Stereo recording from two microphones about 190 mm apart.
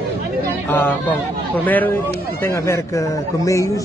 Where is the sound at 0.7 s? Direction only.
10° left (ahead or behind).